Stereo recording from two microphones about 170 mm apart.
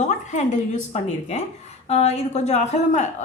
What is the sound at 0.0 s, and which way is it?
A woman's voice, 45° left (ahead or behind).